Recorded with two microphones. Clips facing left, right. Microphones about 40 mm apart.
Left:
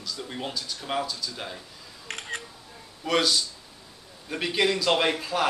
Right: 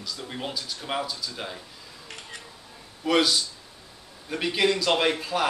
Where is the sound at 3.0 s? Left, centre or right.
Centre.